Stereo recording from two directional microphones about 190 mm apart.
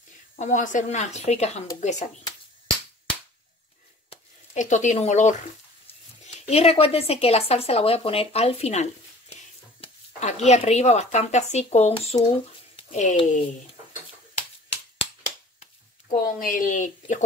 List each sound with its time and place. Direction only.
0.4 s speech: 40° left (ahead or behind)
4.1 s a sound: 40° left (ahead or behind)
5.9 s speech: 35° left (ahead or behind)
15.6 s speech: 45° left (ahead or behind)